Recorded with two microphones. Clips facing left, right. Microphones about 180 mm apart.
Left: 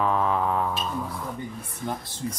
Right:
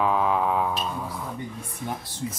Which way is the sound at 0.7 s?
5° right (ahead or behind).